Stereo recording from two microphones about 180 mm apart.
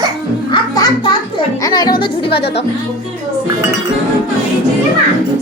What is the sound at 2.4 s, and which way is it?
Speech, 70° left (ahead or behind).